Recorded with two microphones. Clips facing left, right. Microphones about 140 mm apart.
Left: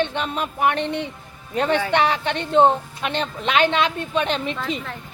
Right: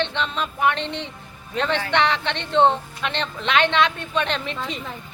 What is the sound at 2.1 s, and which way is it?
Speech, 40° left (ahead or behind).